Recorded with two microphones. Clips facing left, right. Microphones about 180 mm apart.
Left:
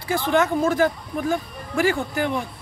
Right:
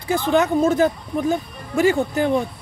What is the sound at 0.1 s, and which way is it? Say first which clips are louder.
Speech: right 2 dB; 20° right (ahead or behind).